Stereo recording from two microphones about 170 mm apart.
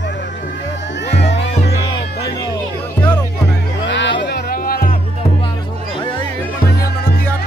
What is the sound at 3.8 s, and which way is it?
Music, 90° left.